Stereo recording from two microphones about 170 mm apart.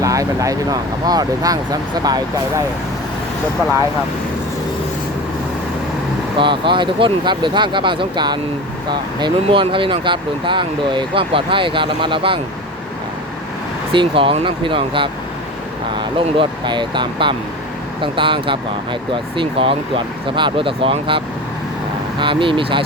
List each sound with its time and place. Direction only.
0.0 s speech: 20° right (ahead or behind)
6.3 s speech: 30° right (ahead or behind)
13.9 s speech: 30° right (ahead or behind)
22.2 s speech: 30° right (ahead or behind)